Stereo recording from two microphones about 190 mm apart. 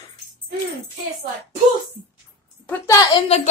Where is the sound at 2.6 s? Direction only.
10° left (ahead or behind).